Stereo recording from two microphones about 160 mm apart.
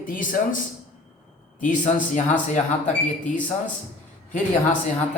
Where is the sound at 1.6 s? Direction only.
50° left (ahead or behind).